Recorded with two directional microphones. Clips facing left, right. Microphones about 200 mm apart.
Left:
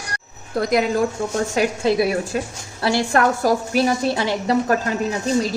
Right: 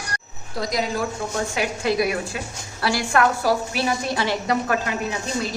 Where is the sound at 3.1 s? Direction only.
45° left (ahead or behind).